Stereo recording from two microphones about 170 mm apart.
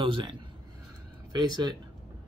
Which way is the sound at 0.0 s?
30° right (ahead or behind).